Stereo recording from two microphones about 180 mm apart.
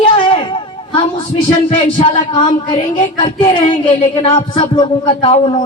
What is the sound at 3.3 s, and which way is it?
A woman's voice, 30° left (ahead or behind).